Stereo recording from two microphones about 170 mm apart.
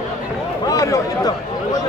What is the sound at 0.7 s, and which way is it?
Speech, 20° left (ahead or behind).